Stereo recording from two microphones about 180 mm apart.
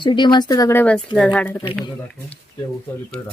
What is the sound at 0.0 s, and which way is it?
Speech, 25° left (ahead or behind).